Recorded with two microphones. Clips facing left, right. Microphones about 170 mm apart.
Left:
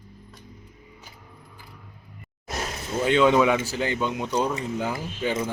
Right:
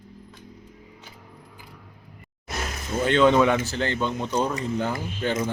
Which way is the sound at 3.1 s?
5° left (ahead or behind).